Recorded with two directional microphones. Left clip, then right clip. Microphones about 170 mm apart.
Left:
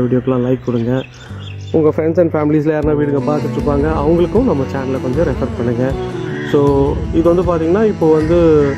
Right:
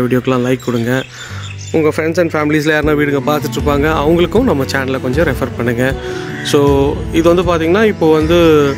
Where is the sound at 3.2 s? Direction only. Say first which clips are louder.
Right 2 dB; 25° right (ahead or behind).